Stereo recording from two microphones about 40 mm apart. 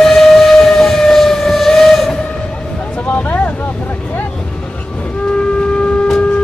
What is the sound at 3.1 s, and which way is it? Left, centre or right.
Vehicle, left.